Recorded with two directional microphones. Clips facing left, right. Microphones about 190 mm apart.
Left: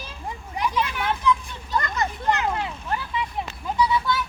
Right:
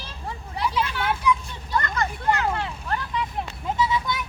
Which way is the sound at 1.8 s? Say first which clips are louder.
Even; 20° left (ahead or behind).